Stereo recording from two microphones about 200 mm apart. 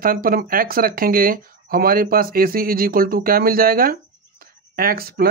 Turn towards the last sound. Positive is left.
turn(degrees=-50)  # may be behind; listen again after turning